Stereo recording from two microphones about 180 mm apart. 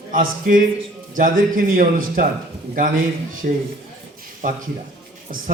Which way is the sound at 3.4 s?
50° right (ahead or behind).